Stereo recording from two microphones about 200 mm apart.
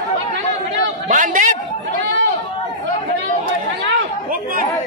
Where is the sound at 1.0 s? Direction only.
40° right (ahead or behind).